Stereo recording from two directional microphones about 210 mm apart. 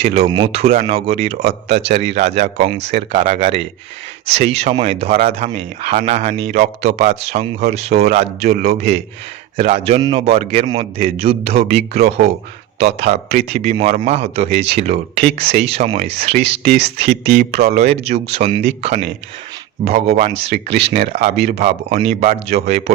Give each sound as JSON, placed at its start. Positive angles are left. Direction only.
{"t": 0.0, "sound": "speech", "side_deg": -30}
{"t": 13.4, "sound": "speech", "side_deg": -30}